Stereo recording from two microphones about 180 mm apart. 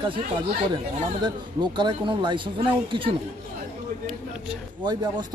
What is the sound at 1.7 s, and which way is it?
Speech, 25° right (ahead or behind).